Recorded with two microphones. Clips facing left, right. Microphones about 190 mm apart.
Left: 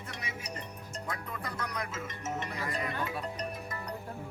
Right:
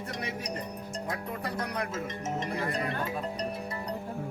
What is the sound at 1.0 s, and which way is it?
Speech, 30° right (ahead or behind).